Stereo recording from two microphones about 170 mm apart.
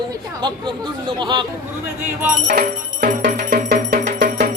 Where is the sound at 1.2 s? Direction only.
25° right (ahead or behind).